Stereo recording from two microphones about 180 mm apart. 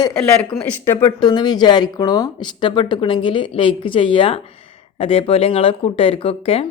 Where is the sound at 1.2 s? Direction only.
25° left (ahead or behind).